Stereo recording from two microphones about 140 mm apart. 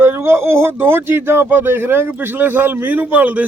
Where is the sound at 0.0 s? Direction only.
20° right (ahead or behind).